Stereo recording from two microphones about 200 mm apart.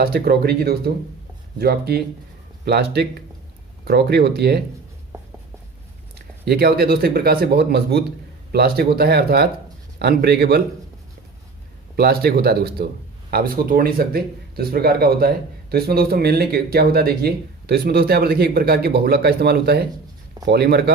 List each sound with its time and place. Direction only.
0.0 s speech: 50° right (ahead or behind)
6.4 s speech: 50° right (ahead or behind)
11.9 s speech: 50° right (ahead or behind)